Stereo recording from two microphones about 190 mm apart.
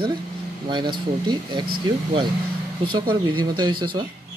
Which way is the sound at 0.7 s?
25° right (ahead or behind).